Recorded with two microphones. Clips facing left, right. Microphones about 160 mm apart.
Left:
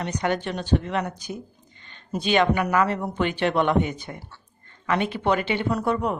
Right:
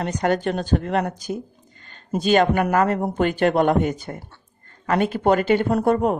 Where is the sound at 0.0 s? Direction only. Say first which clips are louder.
Right 4 dB; 45° right (ahead or behind).